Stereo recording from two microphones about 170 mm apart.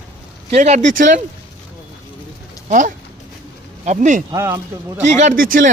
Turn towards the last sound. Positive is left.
turn(degrees=-55)  # may be behind; listen again after turning